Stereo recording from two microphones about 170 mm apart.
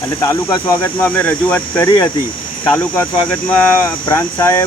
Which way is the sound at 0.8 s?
10° left (ahead or behind).